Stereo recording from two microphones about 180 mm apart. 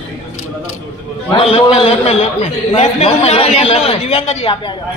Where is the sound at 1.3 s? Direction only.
35° left (ahead or behind).